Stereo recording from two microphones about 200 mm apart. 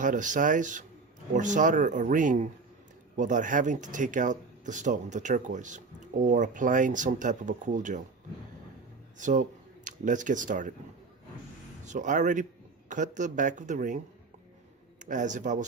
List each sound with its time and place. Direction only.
0.0 s speech: 40° right (ahead or behind)
9.1 s speech: 40° right (ahead or behind)
11.9 s speech: 40° right (ahead or behind)
15.0 s speech: 40° right (ahead or behind)